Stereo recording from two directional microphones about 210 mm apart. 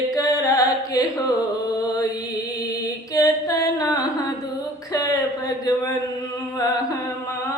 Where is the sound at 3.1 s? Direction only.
15° left (ahead or behind).